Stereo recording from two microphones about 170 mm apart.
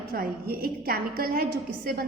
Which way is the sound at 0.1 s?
60° right (ahead or behind).